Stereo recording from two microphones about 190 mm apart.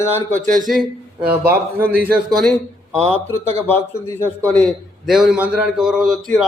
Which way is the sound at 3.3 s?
10° left (ahead or behind).